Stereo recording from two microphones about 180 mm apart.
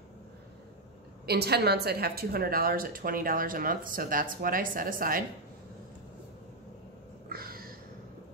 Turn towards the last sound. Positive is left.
turn(degrees=-55)  # may be behind; listen again after turning